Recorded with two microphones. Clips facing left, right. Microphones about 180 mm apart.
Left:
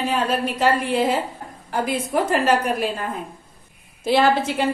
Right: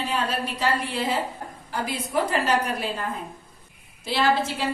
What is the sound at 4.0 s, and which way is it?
Speech, 50° left (ahead or behind).